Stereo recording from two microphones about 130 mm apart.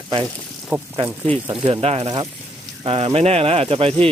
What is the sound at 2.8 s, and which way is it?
Speech, 45° right (ahead or behind).